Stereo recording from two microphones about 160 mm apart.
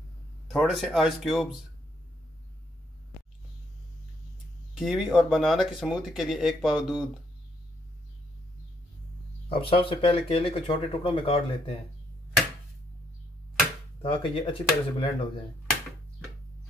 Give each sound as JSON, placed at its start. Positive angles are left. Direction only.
{"t": 0.5, "sound": "speech", "side_deg": 0}
{"t": 4.7, "sound": "speech", "side_deg": -5}
{"t": 9.5, "sound": "speech", "side_deg": 35}
{"t": 14.0, "sound": "speech", "side_deg": 35}